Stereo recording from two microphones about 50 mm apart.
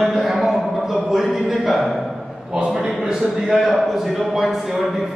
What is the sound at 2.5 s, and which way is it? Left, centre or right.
Speech, centre.